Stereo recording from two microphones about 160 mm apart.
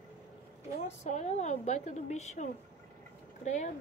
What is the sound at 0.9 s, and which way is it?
A woman's voice, 45° left (ahead or behind).